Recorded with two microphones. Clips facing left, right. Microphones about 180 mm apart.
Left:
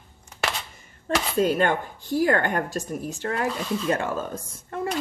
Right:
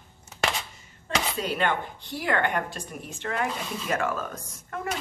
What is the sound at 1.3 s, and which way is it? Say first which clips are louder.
Speech: left 8 dB; 45° left (ahead or behind).